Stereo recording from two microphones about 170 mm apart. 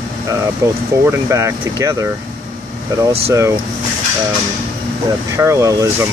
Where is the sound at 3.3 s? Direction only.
15° right (ahead or behind).